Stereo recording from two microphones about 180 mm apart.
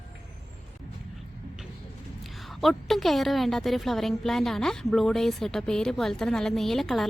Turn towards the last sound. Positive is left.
turn(degrees=0)  # may be behind; listen again after turning